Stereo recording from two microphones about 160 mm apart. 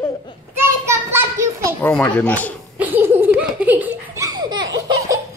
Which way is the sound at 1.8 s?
10° left (ahead or behind).